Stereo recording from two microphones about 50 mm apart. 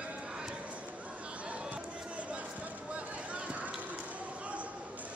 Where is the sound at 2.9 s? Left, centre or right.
Right.